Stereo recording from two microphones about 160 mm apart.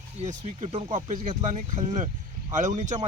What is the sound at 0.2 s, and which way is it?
Speech, 40° right (ahead or behind).